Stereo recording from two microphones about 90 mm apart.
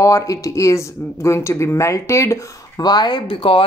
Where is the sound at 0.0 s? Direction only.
40° left (ahead or behind).